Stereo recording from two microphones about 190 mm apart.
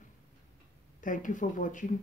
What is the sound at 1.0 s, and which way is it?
Speech, 45° left (ahead or behind).